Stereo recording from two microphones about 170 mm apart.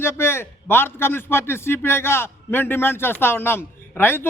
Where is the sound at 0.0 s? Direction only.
15° left (ahead or behind).